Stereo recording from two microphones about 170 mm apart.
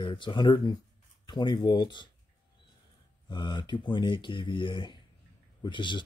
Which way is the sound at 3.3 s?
25° left (ahead or behind).